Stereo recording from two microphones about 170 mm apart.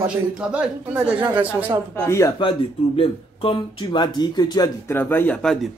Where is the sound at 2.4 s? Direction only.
30° left (ahead or behind).